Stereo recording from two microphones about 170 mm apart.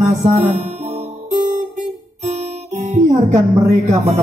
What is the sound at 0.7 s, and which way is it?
Music, 40° right (ahead or behind).